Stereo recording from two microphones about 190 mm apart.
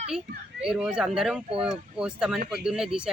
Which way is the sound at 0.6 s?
5° right (ahead or behind).